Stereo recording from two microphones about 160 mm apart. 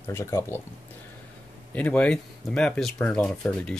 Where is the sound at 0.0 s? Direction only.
15° left (ahead or behind).